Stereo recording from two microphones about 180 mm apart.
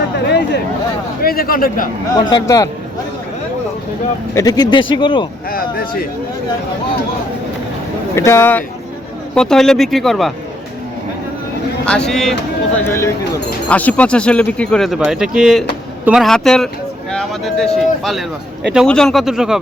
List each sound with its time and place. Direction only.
0.3 s chatter: 70° left (ahead or behind)
1.2 s speech: 55° left (ahead or behind)
2.1 s speech: 20° left (ahead or behind)
4.4 s speech: 20° left (ahead or behind)
5.5 s speech: 55° left (ahead or behind)
8.1 s speech: 15° left (ahead or behind)
11.9 s speech: 5° left (ahead or behind)
12.8 s speech: 15° left (ahead or behind); by 19.5 s 5° right (ahead or behind)